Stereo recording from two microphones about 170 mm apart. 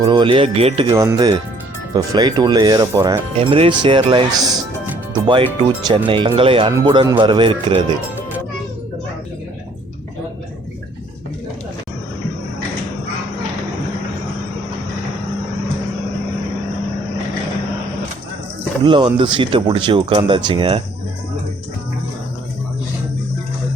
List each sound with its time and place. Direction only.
0.0 s speech: 25° right (ahead or behind)
0.9 s speech: 15° right (ahead or behind)
18.8 s speech: 25° right (ahead or behind)